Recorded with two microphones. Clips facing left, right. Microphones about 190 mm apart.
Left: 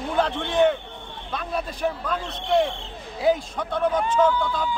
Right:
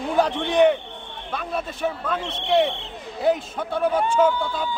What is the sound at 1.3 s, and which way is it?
Speech, 5° right (ahead or behind).